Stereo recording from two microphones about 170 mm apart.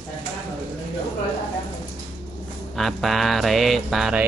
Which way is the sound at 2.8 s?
Centre (ahead or behind).